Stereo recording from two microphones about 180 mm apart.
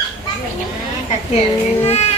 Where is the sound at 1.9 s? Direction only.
35° left (ahead or behind).